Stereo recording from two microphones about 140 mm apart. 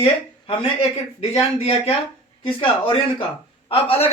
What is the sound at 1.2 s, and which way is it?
Speech, 45° left (ahead or behind).